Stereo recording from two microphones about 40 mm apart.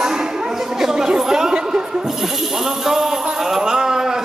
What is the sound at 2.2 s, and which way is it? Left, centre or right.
A man's voice, centre.